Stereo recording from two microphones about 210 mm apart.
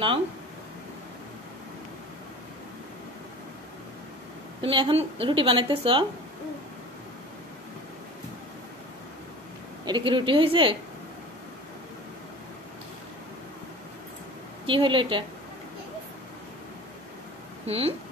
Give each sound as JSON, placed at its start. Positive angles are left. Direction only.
{"t": 4.6, "sound": "a woman's voice", "side_deg": -25}
{"t": 9.8, "sound": "a woman's voice", "side_deg": -20}
{"t": 14.7, "sound": "a woman's voice", "side_deg": -25}
{"t": 17.6, "sound": "a woman's voice", "side_deg": -30}